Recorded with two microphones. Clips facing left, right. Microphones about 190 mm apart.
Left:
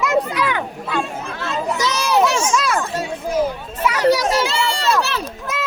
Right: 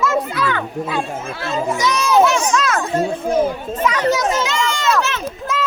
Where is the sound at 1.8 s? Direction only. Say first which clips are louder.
Right 3 dB; 30° left (ahead or behind).